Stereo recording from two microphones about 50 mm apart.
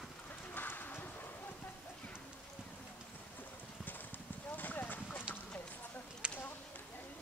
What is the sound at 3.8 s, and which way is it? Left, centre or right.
Clip-clop, left.